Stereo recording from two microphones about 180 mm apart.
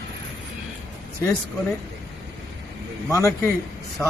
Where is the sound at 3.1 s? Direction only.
15° left (ahead or behind).